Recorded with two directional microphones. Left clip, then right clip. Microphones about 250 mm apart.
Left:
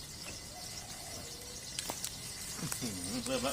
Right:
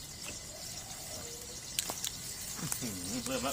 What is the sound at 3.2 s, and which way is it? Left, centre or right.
Speech, centre.